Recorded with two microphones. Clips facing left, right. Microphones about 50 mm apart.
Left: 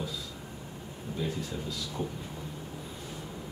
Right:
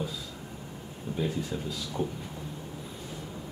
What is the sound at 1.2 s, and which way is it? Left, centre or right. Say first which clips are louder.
Speech: right 3 dB; centre.